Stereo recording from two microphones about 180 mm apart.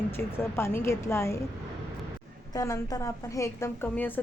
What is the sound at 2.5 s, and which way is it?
A woman's voice, 20° left (ahead or behind).